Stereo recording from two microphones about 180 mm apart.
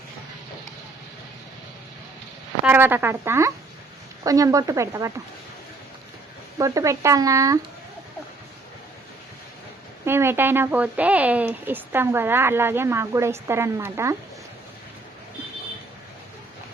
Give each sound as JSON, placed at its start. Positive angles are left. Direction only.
{"t": 2.6, "sound": "speech", "side_deg": -10}
{"t": 6.6, "sound": "speech", "side_deg": -20}
{"t": 10.1, "sound": "speech", "side_deg": -15}